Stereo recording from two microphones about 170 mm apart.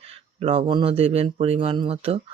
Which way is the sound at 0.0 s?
35° right (ahead or behind).